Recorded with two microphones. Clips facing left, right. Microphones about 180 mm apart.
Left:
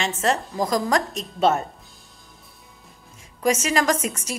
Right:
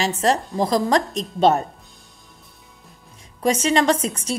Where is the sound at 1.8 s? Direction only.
Centre (ahead or behind).